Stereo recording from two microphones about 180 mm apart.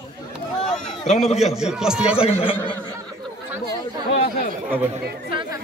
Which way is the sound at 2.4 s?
30° left (ahead or behind).